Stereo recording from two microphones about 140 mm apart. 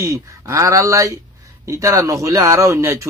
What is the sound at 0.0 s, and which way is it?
Speech, 25° right (ahead or behind).